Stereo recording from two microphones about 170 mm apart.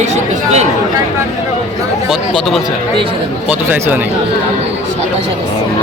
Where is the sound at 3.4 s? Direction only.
10° right (ahead or behind).